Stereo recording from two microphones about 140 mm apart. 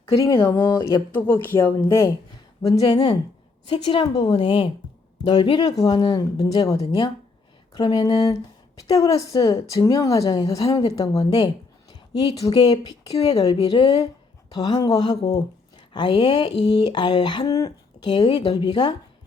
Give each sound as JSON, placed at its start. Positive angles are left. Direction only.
{"t": 0.2, "sound": "a woman's voice", "side_deg": 20}
{"t": 7.9, "sound": "a woman's voice", "side_deg": 25}